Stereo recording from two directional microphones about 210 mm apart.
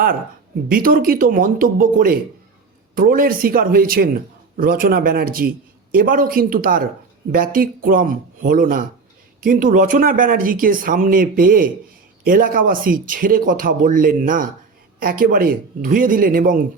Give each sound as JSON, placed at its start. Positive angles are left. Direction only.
{"t": 0.7, "sound": "a man's voice", "side_deg": -45}